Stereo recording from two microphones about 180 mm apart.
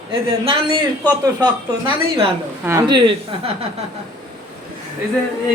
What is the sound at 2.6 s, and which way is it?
Speech, 20° right (ahead or behind).